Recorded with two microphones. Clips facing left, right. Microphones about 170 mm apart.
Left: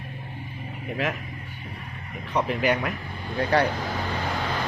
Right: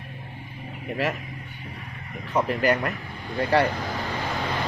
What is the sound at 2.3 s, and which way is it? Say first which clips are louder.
Speech: right 1 dB; centre (ahead or behind).